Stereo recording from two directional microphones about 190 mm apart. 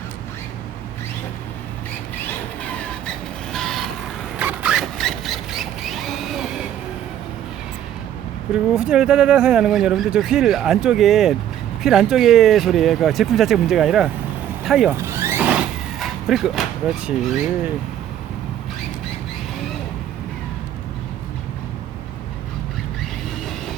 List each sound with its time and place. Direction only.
3.5 s vehicle: centre (ahead or behind)
4.4 s a sound: 5° right (ahead or behind)
8.5 s speech: 5° right (ahead or behind)
14.6 s vehicle: centre (ahead or behind)
14.8 s vehicle: 15° right (ahead or behind)